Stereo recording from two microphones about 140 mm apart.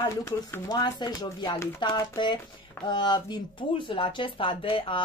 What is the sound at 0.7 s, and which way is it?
Speech, 30° left (ahead or behind).